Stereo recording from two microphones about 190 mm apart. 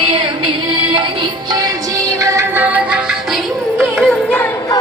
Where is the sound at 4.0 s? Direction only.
5° left (ahead or behind).